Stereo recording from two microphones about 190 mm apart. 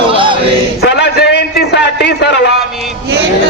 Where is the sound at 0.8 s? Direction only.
65° left (ahead or behind).